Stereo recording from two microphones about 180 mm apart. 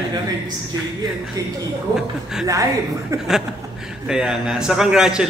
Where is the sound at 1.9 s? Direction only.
5° right (ahead or behind).